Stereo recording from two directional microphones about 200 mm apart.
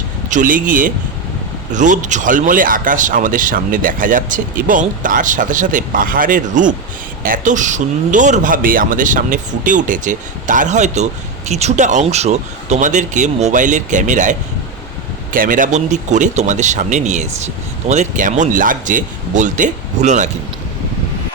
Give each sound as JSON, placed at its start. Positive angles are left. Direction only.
{"t": 0.3, "sound": "speech", "side_deg": -40}